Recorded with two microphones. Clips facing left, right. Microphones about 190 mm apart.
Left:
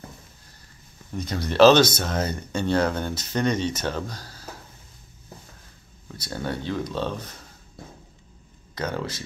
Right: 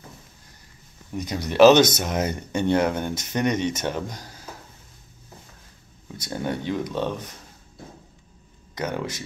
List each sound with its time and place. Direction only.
1.1 s speech: 15° right (ahead or behind)
6.2 s speech: 20° right (ahead or behind)
8.7 s speech: 15° right (ahead or behind)